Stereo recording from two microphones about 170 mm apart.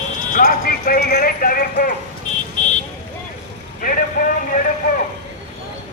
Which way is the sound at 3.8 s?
55° left (ahead or behind).